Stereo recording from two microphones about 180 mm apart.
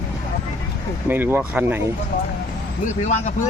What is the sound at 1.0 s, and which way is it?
Speech, 10° right (ahead or behind).